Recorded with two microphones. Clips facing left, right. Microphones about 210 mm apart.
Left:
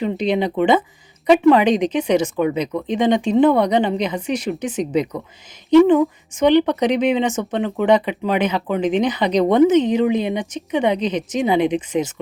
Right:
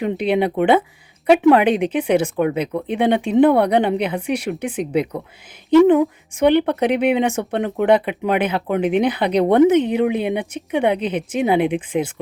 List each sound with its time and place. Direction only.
0.0 s speech: 10° right (ahead or behind)
6.4 s speech: 5° right (ahead or behind)
9.6 s speech: 60° right (ahead or behind)
10.2 s speech: 5° right (ahead or behind)